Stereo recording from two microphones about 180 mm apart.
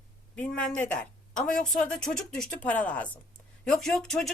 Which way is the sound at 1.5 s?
45° left (ahead or behind).